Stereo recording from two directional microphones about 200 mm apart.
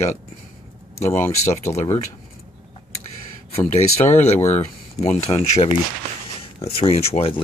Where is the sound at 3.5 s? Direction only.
30° left (ahead or behind).